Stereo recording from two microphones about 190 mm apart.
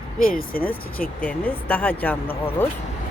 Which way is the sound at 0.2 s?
50° left (ahead or behind).